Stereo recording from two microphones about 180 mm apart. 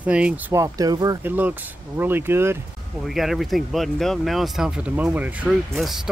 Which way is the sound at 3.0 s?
Centre (ahead or behind).